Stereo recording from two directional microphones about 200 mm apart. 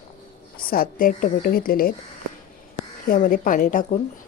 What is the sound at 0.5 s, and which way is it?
A woman's voice, 45° left (ahead or behind).